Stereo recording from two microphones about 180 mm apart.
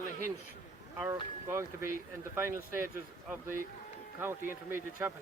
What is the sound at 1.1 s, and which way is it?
Speech, 15° right (ahead or behind).